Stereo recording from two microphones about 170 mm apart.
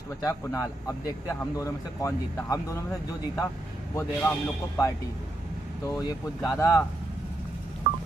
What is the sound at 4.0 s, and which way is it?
Speech, 10° left (ahead or behind).